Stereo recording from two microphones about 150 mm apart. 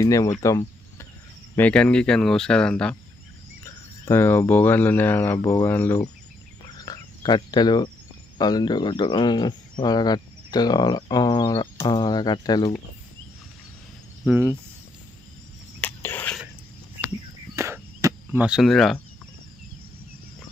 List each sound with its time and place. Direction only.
0.0 s speech: 20° left (ahead or behind)
0.4 s cricket: 20° left (ahead or behind)
1.6 s speech: 5° left (ahead or behind)
3.6 s speech: 20° left (ahead or behind)
6.6 s cricket: 25° left (ahead or behind)
8.4 s speech: 25° left (ahead or behind)
14.2 s speech: 15° right (ahead or behind)
15.8 s a sound: 15° left (ahead or behind)
17.6 s cricket: 20° right (ahead or behind); by 18.9 s centre (ahead or behind)